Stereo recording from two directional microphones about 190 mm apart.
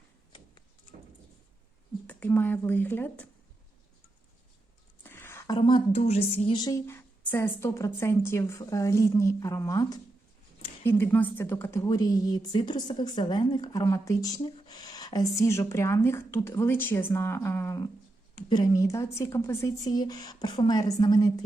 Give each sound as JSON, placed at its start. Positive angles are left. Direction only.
{"t": 2.0, "sound": "speech", "side_deg": 10}
{"t": 5.0, "sound": "a sound", "side_deg": 10}
{"t": 5.5, "sound": "speech", "side_deg": 25}